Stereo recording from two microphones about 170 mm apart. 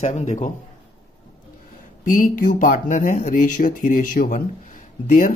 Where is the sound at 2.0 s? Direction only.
55° left (ahead or behind).